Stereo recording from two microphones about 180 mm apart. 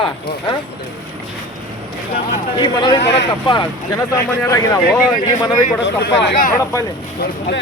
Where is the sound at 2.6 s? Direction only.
25° left (ahead or behind).